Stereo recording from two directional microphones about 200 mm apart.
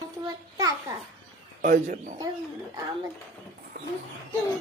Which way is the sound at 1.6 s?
45° right (ahead or behind).